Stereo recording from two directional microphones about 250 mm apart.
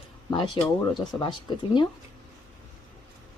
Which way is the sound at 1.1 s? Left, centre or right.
Centre.